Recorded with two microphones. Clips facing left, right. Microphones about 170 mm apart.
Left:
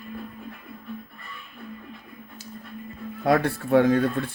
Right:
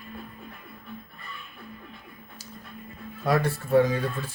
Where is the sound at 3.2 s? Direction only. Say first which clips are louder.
Left 3 dB; 60° left (ahead or behind).